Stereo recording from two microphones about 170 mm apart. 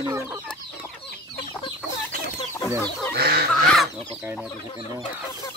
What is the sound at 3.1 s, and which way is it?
Chicken, 65° right (ahead or behind).